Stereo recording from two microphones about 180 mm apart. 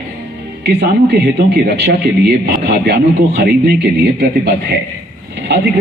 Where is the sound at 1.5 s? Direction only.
65° right (ahead or behind).